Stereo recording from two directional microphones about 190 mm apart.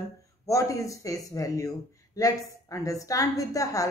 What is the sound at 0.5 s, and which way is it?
Speech, 15° left (ahead or behind).